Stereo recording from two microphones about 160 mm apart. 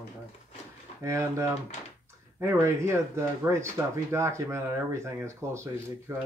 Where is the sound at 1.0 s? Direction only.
15° right (ahead or behind).